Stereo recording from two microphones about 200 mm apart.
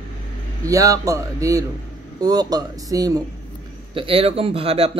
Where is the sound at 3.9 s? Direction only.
30° right (ahead or behind).